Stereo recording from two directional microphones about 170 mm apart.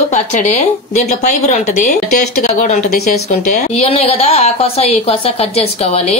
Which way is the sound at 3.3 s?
40° left (ahead or behind).